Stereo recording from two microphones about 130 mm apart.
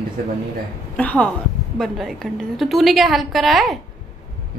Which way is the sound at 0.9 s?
10° left (ahead or behind).